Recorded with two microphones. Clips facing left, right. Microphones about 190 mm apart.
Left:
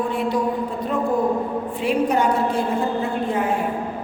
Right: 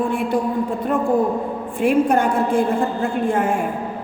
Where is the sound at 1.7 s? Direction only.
50° right (ahead or behind).